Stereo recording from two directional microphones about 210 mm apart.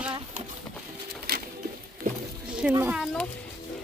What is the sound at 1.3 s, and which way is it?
Pigeon, 45° right (ahead or behind).